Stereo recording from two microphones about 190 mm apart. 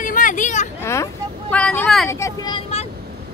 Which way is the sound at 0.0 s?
45° left (ahead or behind).